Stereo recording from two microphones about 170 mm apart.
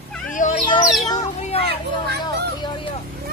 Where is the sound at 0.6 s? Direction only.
25° left (ahead or behind).